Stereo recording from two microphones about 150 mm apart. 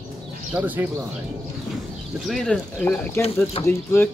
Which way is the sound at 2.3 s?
5° left (ahead or behind).